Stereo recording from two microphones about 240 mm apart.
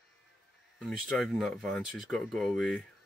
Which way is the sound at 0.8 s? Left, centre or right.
Centre.